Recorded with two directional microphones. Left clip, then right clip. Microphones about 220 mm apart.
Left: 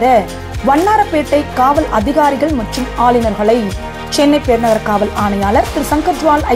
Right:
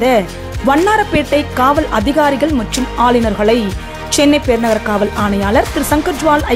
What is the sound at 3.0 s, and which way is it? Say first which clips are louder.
Speech: left 1 dB; 25° right (ahead or behind).